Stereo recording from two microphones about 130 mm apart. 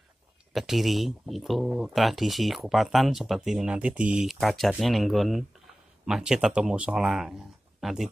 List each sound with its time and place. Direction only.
0.5 s speech: centre (ahead or behind)